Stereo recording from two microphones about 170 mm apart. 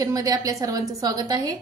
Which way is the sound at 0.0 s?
20° right (ahead or behind).